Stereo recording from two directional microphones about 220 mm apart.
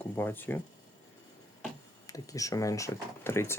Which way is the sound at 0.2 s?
10° left (ahead or behind).